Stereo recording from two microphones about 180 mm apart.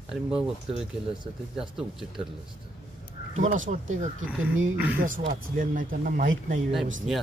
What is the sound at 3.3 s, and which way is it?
Speech, 45° right (ahead or behind).